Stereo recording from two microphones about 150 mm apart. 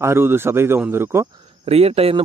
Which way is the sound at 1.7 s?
40° right (ahead or behind).